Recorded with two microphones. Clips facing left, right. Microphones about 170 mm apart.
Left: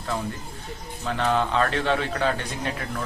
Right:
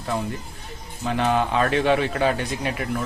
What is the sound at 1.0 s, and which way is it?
A man's voice, 15° right (ahead or behind).